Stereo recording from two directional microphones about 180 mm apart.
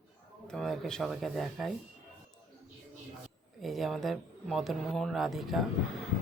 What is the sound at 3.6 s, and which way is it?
Speech, centre (ahead or behind).